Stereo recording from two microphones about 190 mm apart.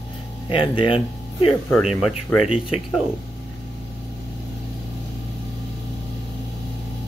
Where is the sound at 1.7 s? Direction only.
Centre (ahead or behind).